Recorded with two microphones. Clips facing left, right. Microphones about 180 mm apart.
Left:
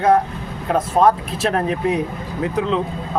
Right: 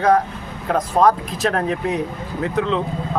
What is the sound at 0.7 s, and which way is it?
Speech, 5° left (ahead or behind).